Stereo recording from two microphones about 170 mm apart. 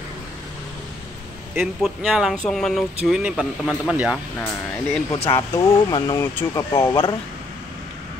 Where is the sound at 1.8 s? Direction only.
Centre (ahead or behind).